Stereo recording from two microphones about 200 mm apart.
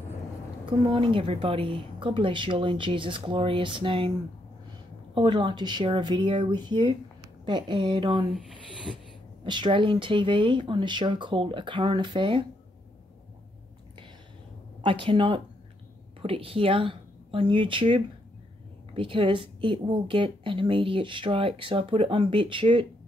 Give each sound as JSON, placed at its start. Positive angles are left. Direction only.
{"t": 0.7, "sound": "speech", "side_deg": -25}
{"t": 8.3, "sound": "speech", "side_deg": 0}
{"t": 9.4, "sound": "speech", "side_deg": -25}
{"t": 14.8, "sound": "speech", "side_deg": -25}